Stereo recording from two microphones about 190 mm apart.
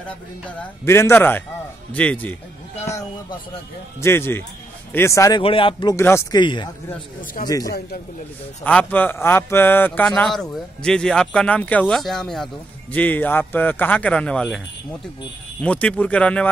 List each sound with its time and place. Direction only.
0.6 s a man's voice: 15° left (ahead or behind)
4.0 s a man's voice: 15° left (ahead or behind)
5.4 s speech: 30° left (ahead or behind)
6.4 s speech: 25° left (ahead or behind)
8.6 s a man's voice: 10° left (ahead or behind)
15.6 s a man's voice: 5° left (ahead or behind)